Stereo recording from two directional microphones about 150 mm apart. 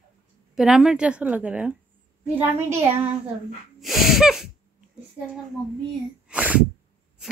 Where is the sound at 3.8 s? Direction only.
Centre (ahead or behind).